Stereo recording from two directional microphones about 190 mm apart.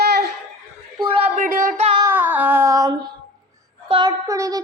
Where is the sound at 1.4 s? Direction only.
40° right (ahead or behind).